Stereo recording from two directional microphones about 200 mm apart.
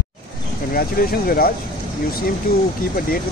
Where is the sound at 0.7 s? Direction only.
45° left (ahead or behind).